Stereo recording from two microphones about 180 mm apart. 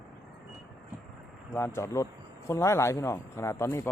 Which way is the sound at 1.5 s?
15° left (ahead or behind).